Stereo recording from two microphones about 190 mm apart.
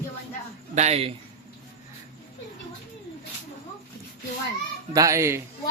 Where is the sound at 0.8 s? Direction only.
35° right (ahead or behind).